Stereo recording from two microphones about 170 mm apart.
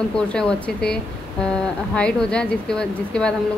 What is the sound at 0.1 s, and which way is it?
Speech, 5° left (ahead or behind).